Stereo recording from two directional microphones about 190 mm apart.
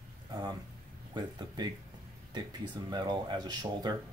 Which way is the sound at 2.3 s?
20° right (ahead or behind).